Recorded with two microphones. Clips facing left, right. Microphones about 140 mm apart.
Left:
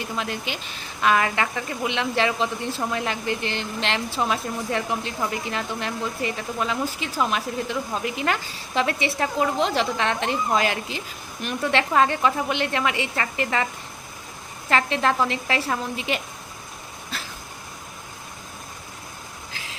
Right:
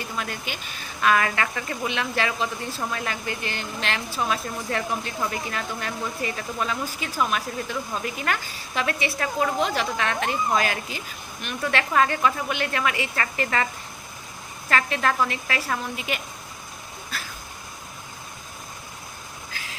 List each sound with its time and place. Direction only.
0.2 s speech: 20° left (ahead or behind)
14.7 s speech: 25° left (ahead or behind)